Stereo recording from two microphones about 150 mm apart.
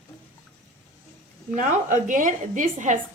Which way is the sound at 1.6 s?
60° right (ahead or behind).